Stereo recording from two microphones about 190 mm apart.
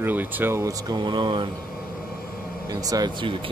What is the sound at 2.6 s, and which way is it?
Speech, 20° right (ahead or behind).